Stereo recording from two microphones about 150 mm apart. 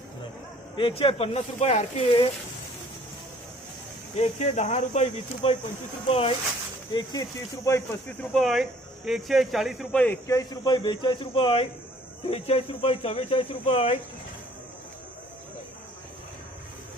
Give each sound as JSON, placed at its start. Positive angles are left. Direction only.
{"t": 0.8, "sound": "a man's voice", "side_deg": 35}
{"t": 4.2, "sound": "a man's voice", "side_deg": 50}
{"t": 6.9, "sound": "speech", "side_deg": 25}
{"t": 8.2, "sound": "a man's voice", "side_deg": 0}
{"t": 10.0, "sound": "a man's voice", "side_deg": 15}